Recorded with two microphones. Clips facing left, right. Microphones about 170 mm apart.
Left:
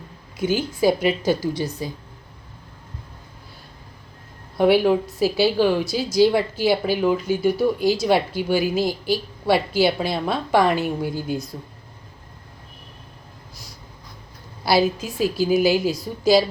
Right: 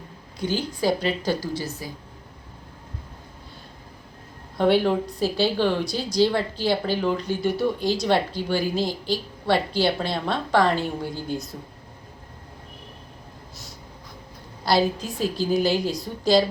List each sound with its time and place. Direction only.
0.3 s a woman's voice: 10° left (ahead or behind)
4.5 s a woman's voice: 10° left (ahead or behind)
14.6 s a woman's voice: 5° left (ahead or behind)